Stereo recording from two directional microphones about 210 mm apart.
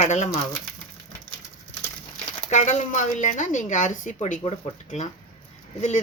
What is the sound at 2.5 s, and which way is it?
Speech, 35° left (ahead or behind).